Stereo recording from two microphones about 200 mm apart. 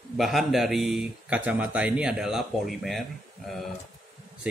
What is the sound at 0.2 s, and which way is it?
A man's voice, centre (ahead or behind).